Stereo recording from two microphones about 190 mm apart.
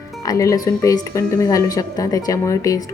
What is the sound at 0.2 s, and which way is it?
A woman's voice, 15° left (ahead or behind).